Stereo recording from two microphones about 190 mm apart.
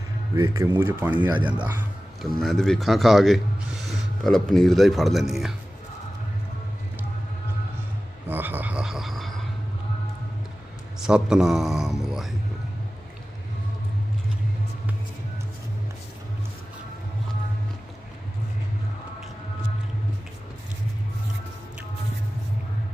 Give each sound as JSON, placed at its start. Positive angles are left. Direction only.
{"t": 0.3, "sound": "speech", "side_deg": -15}
{"t": 2.2, "sound": "speech", "side_deg": 0}
{"t": 8.3, "sound": "a sound", "side_deg": -10}
{"t": 11.0, "sound": "speech", "side_deg": -5}